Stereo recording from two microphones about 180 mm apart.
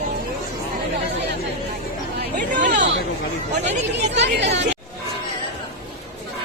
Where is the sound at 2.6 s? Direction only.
45° right (ahead or behind).